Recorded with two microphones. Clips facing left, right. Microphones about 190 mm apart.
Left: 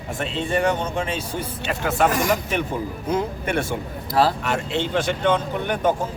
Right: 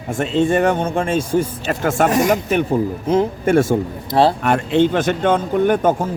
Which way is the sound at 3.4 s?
45° right (ahead or behind).